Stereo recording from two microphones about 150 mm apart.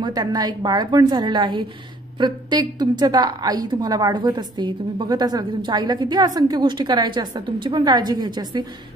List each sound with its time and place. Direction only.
0.0 s a woman's voice: 25° right (ahead or behind)